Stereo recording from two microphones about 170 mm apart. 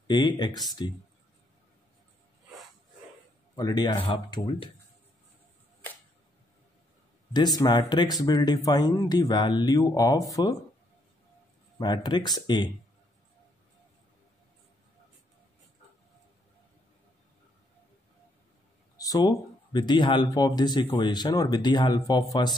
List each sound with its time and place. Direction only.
0.1 s speech: 25° left (ahead or behind)
3.5 s speech: 25° left (ahead or behind)
7.3 s speech: 25° left (ahead or behind)
11.8 s speech: 25° left (ahead or behind)
18.9 s speech: 20° left (ahead or behind)